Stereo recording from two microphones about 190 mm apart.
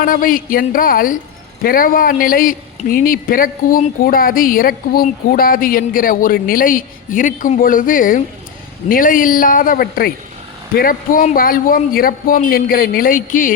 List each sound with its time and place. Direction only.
0.0 s speech: 50° left (ahead or behind)